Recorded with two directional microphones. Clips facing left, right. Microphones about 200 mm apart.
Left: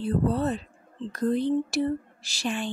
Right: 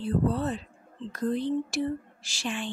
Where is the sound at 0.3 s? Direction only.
40° left (ahead or behind).